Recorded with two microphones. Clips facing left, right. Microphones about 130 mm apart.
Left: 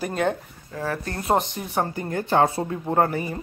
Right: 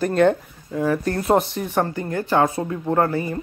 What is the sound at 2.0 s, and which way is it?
Speech, 25° left (ahead or behind).